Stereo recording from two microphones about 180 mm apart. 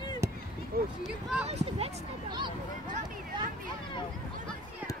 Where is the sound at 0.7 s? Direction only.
55° right (ahead or behind).